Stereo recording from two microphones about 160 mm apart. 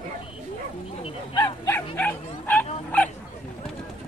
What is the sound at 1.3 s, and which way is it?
Bow-wow, 25° left (ahead or behind).